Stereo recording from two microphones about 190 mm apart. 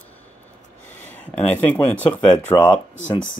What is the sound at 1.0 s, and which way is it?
Speech, 10° left (ahead or behind).